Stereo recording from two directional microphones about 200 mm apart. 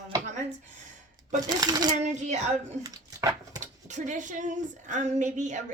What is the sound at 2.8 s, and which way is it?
Dog, 15° right (ahead or behind).